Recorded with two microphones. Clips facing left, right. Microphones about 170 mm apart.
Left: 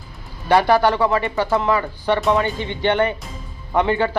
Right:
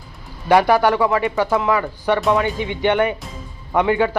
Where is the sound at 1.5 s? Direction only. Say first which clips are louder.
Even; centre (ahead or behind).